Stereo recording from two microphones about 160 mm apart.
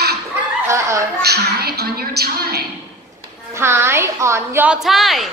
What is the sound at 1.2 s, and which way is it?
A woman's voice, 85° right.